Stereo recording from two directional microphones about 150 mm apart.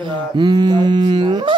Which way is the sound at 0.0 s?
30° right (ahead or behind).